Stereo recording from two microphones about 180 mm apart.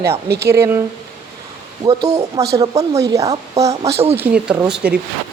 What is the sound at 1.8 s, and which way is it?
A woman's voice, 20° right (ahead or behind).